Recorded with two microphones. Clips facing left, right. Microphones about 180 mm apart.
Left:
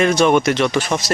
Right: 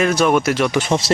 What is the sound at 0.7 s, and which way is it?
Speech, 25° right (ahead or behind).